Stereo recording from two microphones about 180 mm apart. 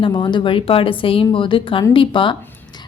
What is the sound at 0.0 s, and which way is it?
Speech, 25° left (ahead or behind).